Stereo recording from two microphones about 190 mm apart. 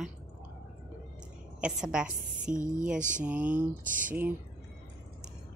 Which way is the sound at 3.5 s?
45° right (ahead or behind).